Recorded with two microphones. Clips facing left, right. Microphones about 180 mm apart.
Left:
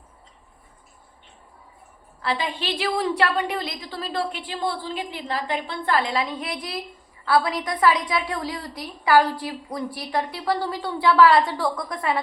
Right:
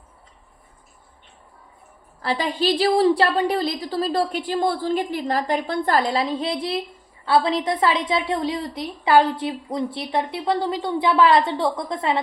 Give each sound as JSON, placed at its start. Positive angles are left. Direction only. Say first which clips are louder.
{"t": 2.2, "sound": "a woman's voice", "louder": "right 5 dB", "side_deg": -40}